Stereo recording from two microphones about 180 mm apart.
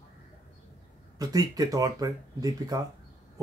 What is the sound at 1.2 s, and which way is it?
Speech, 20° right (ahead or behind).